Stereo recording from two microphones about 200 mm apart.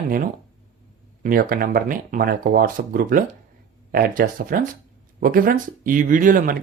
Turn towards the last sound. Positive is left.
turn(degrees=-45)  # may be behind; listen again after turning